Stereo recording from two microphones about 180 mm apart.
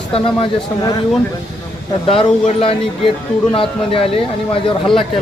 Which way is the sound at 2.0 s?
30° left (ahead or behind).